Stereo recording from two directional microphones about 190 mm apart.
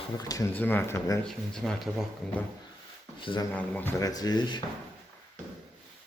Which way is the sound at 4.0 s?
20° left (ahead or behind).